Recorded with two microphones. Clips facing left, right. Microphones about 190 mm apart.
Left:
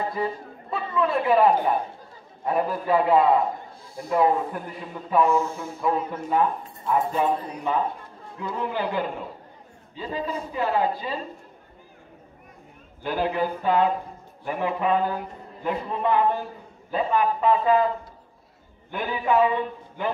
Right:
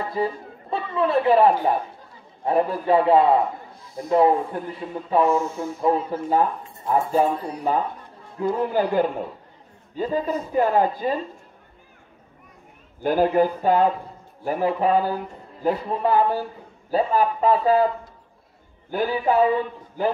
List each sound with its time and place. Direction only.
0.1 s a woman's voice: 30° right (ahead or behind); by 11.1 s 45° right (ahead or behind)
13.0 s a woman's voice: 45° right (ahead or behind)
18.9 s a man's voice: 35° right (ahead or behind)